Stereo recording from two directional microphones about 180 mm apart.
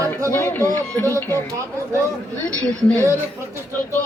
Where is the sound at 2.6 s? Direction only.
5° left (ahead or behind).